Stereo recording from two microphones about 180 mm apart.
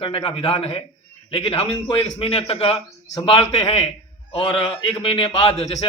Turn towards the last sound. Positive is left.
turn(degrees=30)  # may be behind; listen again after turning